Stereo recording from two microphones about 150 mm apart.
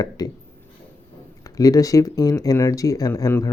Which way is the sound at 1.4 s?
25° left (ahead or behind).